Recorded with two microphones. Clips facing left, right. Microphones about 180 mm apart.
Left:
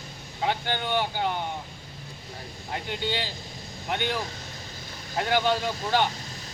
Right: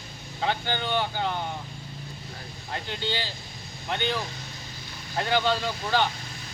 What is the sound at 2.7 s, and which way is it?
Speech, 10° left (ahead or behind).